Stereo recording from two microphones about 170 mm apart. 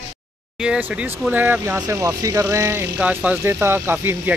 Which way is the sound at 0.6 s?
5° right (ahead or behind).